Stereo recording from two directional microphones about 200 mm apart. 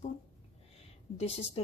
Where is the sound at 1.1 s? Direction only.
30° left (ahead or behind).